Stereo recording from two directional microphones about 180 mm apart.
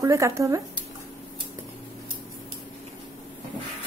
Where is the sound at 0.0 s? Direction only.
15° right (ahead or behind).